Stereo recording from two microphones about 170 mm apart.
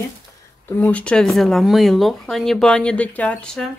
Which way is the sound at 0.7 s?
10° left (ahead or behind).